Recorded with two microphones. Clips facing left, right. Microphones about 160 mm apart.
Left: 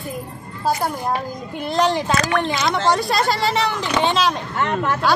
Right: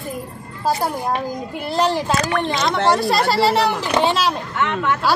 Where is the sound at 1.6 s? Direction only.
5° right (ahead or behind).